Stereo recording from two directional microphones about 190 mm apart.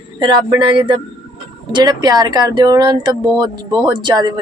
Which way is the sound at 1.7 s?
20° right (ahead or behind).